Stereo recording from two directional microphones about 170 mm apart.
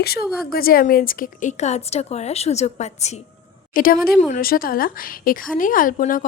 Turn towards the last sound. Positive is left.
turn(degrees=50)  # may be behind; listen again after turning